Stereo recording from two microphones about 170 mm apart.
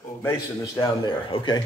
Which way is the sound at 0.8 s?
25° left (ahead or behind).